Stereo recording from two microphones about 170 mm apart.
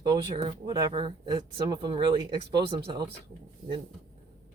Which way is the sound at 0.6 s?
30° right (ahead or behind).